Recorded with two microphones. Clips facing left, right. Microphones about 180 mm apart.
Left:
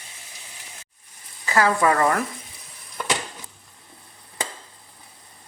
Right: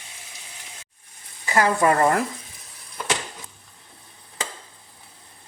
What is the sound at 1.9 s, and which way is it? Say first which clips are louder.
Speech: right 1 dB; 30° right (ahead or behind).